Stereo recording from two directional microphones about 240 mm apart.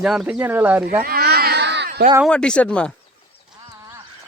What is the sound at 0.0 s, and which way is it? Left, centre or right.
Speech, centre.